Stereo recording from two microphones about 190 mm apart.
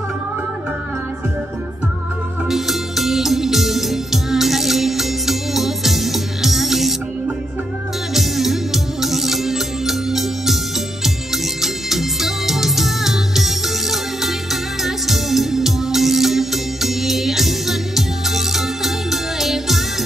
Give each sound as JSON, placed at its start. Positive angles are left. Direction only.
{"t": 2.4, "sound": "music", "side_deg": 0}
{"t": 8.1, "sound": "music", "side_deg": 0}
{"t": 11.6, "sound": "music", "side_deg": 0}